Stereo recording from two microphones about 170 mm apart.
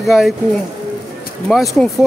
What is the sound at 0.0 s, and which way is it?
Speech, centre (ahead or behind).